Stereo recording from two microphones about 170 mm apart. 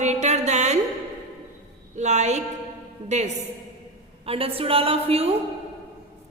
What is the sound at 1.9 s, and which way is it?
Speech, 45° right (ahead or behind).